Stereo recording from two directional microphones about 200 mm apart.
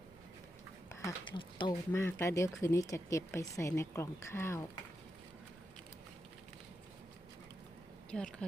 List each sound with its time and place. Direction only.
0.9 s dog: 15° left (ahead or behind)
1.4 s speech: 25° left (ahead or behind)
8.1 s speech: 5° left (ahead or behind)